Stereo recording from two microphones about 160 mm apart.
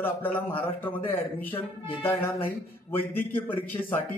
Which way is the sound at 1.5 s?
35° left (ahead or behind).